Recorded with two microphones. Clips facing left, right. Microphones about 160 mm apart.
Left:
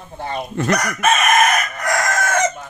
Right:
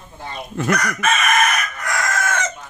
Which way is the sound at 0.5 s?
Centre (ahead or behind).